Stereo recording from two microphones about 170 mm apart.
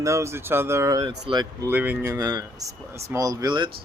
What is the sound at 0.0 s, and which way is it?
Speech, 15° right (ahead or behind).